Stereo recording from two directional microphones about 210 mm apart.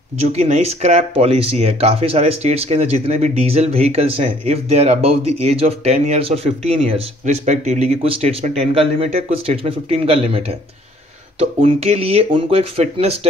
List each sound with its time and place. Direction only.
0.2 s speech: 30° right (ahead or behind)